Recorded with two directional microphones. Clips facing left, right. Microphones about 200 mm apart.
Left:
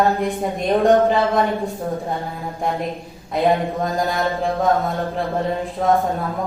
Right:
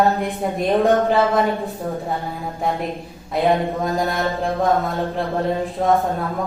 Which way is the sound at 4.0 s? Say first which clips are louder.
Even; centre (ahead or behind).